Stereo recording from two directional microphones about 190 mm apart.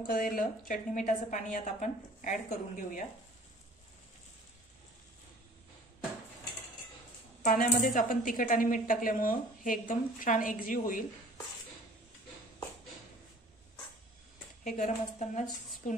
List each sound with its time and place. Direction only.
0.0 s a woman's voice: 50° left (ahead or behind)
7.4 s a woman's voice: 45° left (ahead or behind)
14.6 s a woman's voice: 40° left (ahead or behind)